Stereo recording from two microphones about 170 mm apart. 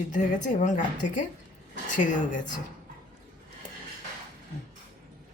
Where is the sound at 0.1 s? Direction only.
50° left (ahead or behind).